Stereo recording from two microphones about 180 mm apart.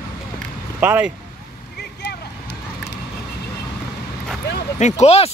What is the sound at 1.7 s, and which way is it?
Vehicle, 65° left (ahead or behind).